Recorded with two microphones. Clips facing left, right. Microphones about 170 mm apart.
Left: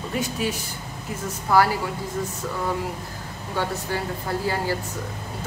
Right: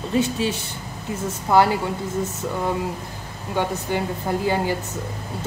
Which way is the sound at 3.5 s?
20° right (ahead or behind).